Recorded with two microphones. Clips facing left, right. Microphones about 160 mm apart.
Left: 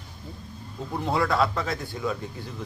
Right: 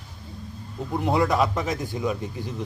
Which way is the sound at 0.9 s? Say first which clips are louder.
Right 3 dB; 20° right (ahead or behind).